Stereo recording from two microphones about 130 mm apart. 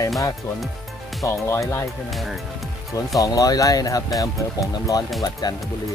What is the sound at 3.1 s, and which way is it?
Speech, 25° left (ahead or behind).